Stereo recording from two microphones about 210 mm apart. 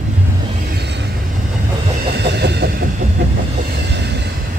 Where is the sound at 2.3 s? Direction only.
50° right (ahead or behind).